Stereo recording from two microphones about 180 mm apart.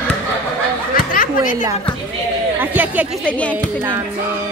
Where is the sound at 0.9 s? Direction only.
50° left (ahead or behind).